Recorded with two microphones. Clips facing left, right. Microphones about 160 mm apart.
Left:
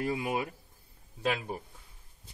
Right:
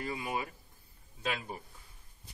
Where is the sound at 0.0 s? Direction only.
70° left (ahead or behind).